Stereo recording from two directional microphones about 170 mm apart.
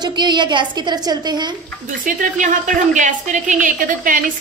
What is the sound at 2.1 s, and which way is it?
Speech, 50° right (ahead or behind).